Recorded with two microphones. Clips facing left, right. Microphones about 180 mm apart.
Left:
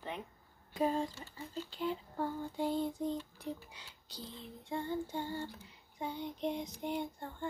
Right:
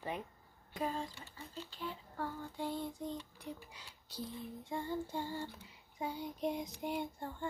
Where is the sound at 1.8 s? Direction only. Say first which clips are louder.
Left 6 dB; 20° left (ahead or behind).